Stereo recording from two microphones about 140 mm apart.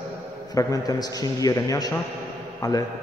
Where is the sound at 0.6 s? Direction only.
25° left (ahead or behind).